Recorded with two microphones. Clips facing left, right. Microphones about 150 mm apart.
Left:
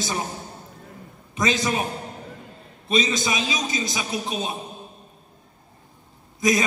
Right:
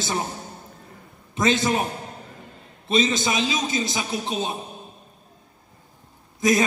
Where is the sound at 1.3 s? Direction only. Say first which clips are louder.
Right 2 dB; 30° right (ahead or behind).